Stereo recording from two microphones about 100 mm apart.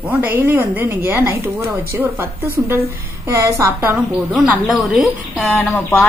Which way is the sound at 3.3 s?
25° right (ahead or behind).